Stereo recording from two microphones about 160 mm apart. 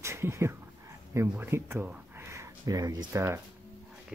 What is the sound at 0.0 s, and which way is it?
Speech, 15° right (ahead or behind).